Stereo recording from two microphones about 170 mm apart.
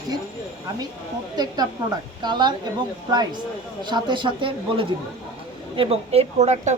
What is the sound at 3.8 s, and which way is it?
A woman's voice, 25° right (ahead or behind).